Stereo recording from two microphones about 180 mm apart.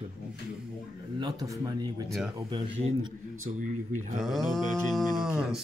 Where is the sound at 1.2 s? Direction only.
20° right (ahead or behind).